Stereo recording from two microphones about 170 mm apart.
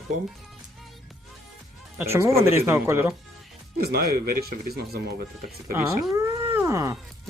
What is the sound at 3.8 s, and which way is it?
Speech, 65° right (ahead or behind).